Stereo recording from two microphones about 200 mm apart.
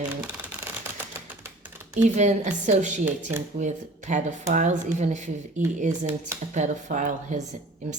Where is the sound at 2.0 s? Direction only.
35° right (ahead or behind).